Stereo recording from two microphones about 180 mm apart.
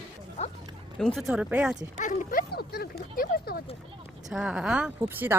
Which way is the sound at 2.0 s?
45° left (ahead or behind).